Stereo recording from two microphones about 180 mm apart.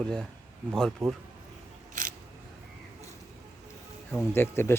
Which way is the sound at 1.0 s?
Centre (ahead or behind).